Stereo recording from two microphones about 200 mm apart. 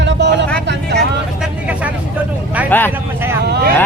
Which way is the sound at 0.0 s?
60° right (ahead or behind).